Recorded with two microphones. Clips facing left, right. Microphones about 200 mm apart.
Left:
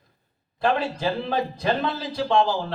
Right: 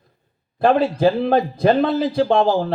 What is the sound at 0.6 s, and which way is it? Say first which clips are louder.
A man's voice: right 8 dB; 55° right (ahead or behind).